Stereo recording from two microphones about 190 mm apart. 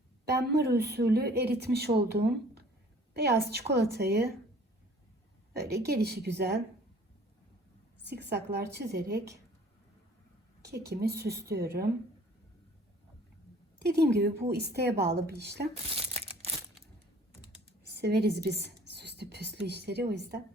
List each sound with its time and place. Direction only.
0.3 s speech: 60° right (ahead or behind)
5.5 s speech: 60° right (ahead or behind)
8.0 s speech: 60° right (ahead or behind)
10.7 s speech: 60° right (ahead or behind)
13.8 s speech: 60° right (ahead or behind)
17.8 s a sound: 60° right (ahead or behind)
18.4 s speech: 60° right (ahead or behind)